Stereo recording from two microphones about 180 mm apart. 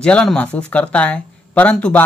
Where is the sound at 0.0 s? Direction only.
5° left (ahead or behind).